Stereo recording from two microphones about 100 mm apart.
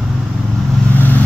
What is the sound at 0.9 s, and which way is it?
Vehicle, 20° left (ahead or behind).